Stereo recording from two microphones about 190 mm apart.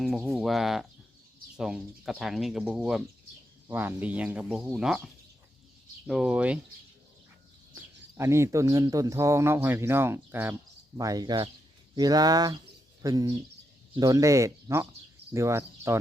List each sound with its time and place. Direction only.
0.0 s speech: centre (ahead or behind)
7.8 s speech: 15° right (ahead or behind)